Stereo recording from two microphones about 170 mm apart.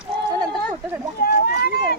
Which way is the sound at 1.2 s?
65° left (ahead or behind).